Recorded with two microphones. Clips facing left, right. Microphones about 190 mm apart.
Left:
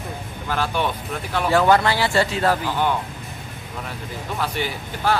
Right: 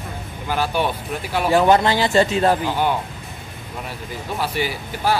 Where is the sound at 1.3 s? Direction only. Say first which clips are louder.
Right 2 dB; 15° right (ahead or behind).